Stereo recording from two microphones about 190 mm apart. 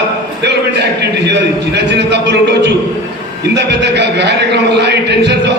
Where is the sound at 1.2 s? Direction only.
65° right (ahead or behind).